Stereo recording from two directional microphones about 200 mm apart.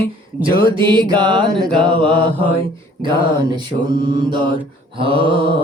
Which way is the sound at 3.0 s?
25° right (ahead or behind).